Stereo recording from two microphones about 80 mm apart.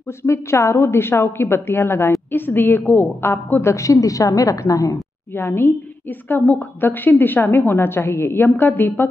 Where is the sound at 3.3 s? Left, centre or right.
Left.